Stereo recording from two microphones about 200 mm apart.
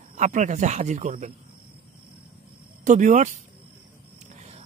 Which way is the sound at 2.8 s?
40° right (ahead or behind).